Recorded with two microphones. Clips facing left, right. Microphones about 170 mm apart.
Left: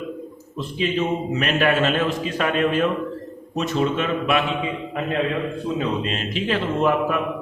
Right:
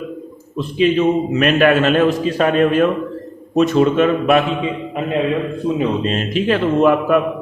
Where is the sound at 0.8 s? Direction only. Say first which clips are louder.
Right 8 dB; 65° right (ahead or behind).